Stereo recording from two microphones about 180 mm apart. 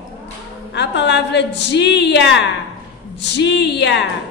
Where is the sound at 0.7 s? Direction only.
75° left (ahead or behind).